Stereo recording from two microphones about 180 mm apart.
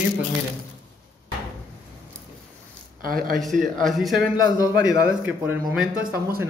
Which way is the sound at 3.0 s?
50° right (ahead or behind).